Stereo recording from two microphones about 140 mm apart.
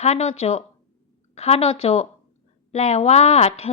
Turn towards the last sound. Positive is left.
turn(degrees=45)  # may be behind; listen again after turning